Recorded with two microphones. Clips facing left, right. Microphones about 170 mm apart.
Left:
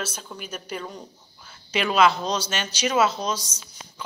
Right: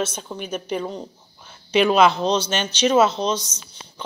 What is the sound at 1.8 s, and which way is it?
Speech, 30° right (ahead or behind).